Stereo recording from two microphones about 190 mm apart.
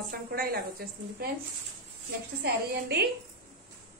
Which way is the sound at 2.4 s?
60° right (ahead or behind).